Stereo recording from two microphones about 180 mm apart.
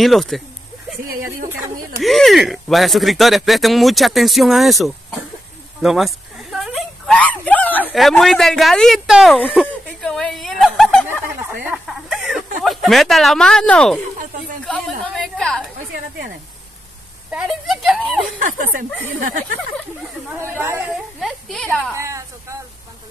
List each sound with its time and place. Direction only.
0.0 s speech: centre (ahead or behind)
2.0 s speech: centre (ahead or behind)
5.8 s a sound: centre (ahead or behind)
14.7 s a woman's voice: 5° left (ahead or behind)
17.3 s speech: 5° right (ahead or behind)
18.4 s speech: 45° right (ahead or behind)
20.2 s speech: 15° right (ahead or behind)
21.2 s a woman's voice: centre (ahead or behind)
21.9 s speech: 15° right (ahead or behind)